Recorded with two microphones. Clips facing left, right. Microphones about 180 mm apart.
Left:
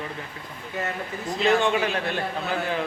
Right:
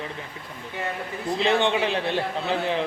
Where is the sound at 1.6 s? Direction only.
25° right (ahead or behind).